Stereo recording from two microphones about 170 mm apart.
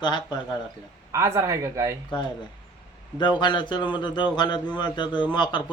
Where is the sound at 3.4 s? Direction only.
25° left (ahead or behind).